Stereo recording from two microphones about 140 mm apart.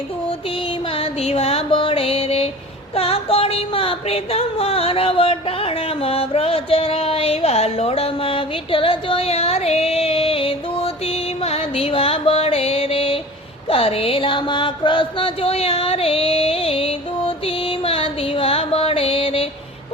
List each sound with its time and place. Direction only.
0.9 s music: 45° left (ahead or behind)
2.9 s a sound: 45° left (ahead or behind)
13.7 s music: 40° left (ahead or behind)